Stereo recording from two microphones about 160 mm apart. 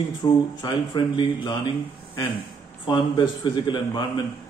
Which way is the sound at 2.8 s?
30° left (ahead or behind).